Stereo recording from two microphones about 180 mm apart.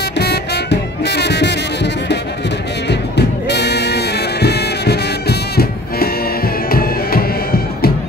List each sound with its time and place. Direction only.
0.2 s music: 65° left (ahead or behind)